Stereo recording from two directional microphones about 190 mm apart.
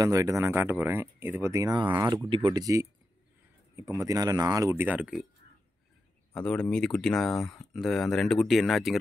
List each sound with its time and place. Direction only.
0.0 s speech: 15° right (ahead or behind)
6.3 s speech: 5° left (ahead or behind)